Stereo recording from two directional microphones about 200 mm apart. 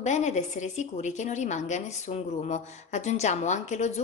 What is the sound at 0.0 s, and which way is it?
A woman's voice, 35° left (ahead or behind).